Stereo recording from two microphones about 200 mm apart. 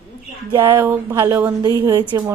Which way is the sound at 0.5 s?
15° right (ahead or behind).